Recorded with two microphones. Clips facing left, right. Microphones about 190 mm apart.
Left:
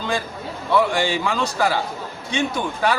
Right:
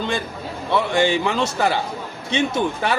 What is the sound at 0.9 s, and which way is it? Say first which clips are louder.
Speech: right 3 dB; 25° right (ahead or behind).